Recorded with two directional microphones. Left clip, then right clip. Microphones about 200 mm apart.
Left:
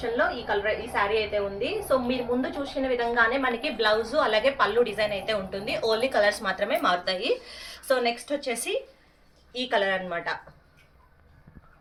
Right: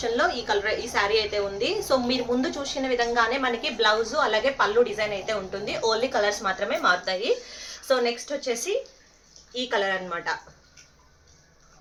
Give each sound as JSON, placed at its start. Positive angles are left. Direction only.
{"t": 0.2, "sound": "a woman's voice", "side_deg": -25}
{"t": 9.6, "sound": "a woman's voice", "side_deg": -15}